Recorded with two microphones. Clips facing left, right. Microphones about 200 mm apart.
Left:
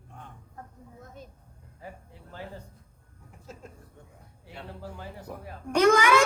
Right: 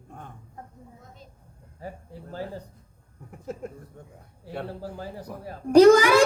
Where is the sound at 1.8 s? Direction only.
40° right (ahead or behind).